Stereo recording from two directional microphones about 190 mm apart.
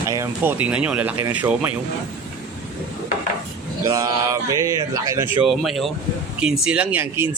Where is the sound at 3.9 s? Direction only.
20° right (ahead or behind).